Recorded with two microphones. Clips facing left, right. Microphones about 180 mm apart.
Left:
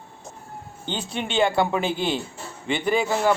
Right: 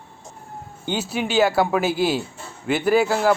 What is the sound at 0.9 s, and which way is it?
A man's voice, 5° right (ahead or behind).